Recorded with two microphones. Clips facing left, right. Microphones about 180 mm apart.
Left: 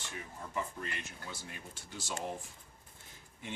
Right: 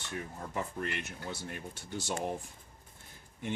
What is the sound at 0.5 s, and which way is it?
Speech, 60° right (ahead or behind).